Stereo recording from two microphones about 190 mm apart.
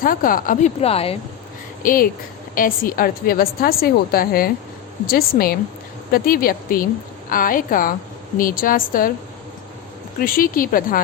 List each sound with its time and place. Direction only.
0.0 s a woman's voice: 45° left (ahead or behind); by 1.1 s 30° left (ahead or behind)
1.8 s a woman's voice: 45° left (ahead or behind)
10.2 s a woman's voice: 50° left (ahead or behind)